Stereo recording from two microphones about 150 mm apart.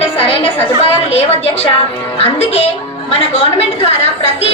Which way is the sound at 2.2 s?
45° left (ahead or behind).